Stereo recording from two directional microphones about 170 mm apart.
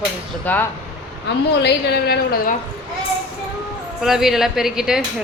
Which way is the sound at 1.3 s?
80° left.